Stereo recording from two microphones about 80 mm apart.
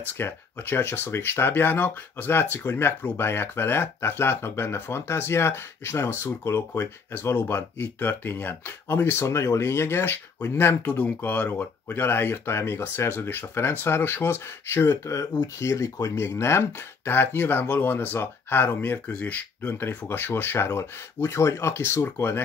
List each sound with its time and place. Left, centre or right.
0.0 s speech: left